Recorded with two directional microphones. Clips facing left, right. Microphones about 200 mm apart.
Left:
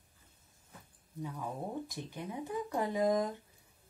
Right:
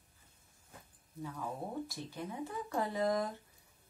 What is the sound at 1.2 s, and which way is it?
A woman's voice, 15° left (ahead or behind).